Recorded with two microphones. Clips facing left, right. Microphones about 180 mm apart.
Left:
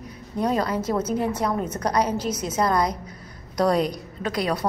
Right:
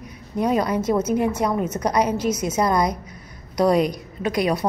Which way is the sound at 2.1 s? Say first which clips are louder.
Right 4 dB; 35° left (ahead or behind).